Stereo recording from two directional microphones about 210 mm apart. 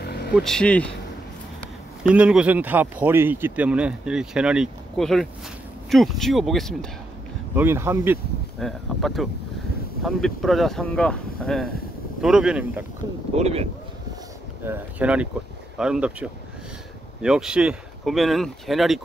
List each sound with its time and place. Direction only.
0.0 s vehicle: 50° left (ahead or behind)
0.3 s speech: centre (ahead or behind)
2.0 s speech: 5° right (ahead or behind)
7.5 s speech: 10° right (ahead or behind)
8.5 s speech: centre (ahead or behind)
13.0 s speech: 20° right (ahead or behind)
13.4 s speech: 30° right (ahead or behind)
14.7 s speech: 5° right (ahead or behind)